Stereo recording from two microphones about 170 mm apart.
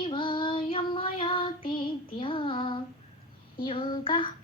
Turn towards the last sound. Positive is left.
turn(degrees=30)  # may be behind; listen again after turning